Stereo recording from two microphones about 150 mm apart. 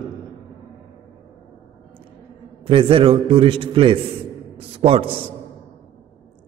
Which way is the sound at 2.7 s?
35° right (ahead or behind).